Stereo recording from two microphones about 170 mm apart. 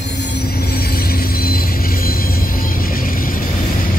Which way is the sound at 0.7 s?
65° left (ahead or behind).